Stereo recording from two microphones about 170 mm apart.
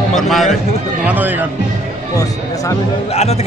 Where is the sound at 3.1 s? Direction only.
40° left (ahead or behind).